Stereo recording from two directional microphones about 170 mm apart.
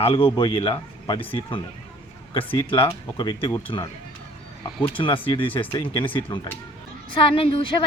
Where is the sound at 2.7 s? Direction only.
30° left (ahead or behind).